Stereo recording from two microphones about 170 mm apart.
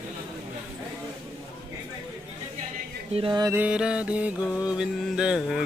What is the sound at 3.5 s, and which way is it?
Speech, 5° right (ahead or behind).